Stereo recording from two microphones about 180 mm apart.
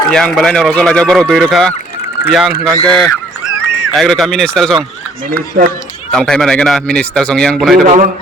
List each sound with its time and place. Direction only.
0.1 s speech: 5° left (ahead or behind)
5.3 s speech: 55° right (ahead or behind)
6.1 s speech: 5° left (ahead or behind)
7.9 s speech: 45° right (ahead or behind)